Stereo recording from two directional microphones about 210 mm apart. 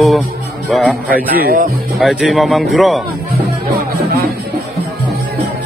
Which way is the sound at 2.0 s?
Centre (ahead or behind).